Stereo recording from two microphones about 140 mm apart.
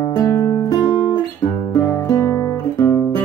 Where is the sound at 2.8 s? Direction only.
10° left (ahead or behind).